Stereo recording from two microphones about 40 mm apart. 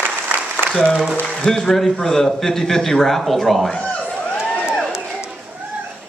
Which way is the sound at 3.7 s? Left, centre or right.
Left.